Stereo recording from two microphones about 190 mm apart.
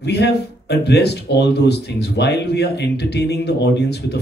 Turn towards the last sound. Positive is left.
turn(degrees=60)  # may be behind; listen again after turning